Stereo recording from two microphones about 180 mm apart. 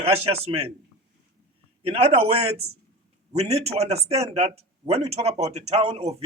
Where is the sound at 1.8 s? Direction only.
35° right (ahead or behind).